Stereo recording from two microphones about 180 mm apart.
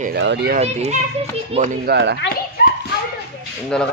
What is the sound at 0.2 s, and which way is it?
Speech, 70° right (ahead or behind).